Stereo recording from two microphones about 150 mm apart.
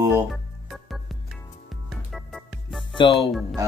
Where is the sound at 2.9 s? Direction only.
35° left (ahead or behind).